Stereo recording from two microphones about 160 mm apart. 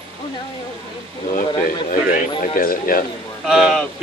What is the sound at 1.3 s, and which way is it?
Speech, 60° left (ahead or behind).